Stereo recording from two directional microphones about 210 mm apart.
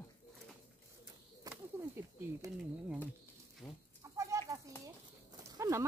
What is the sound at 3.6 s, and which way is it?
Goat, centre (ahead or behind).